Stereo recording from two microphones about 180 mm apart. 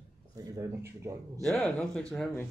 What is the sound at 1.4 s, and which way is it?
Speech, centre (ahead or behind).